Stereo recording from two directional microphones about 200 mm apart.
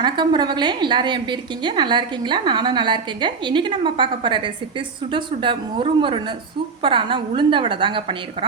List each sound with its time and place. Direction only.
0.0 s a woman's voice: 20° right (ahead or behind)